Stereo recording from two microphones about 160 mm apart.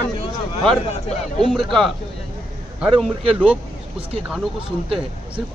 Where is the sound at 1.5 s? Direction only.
Centre (ahead or behind).